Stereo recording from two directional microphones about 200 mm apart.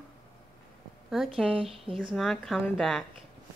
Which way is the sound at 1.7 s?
25° right (ahead or behind).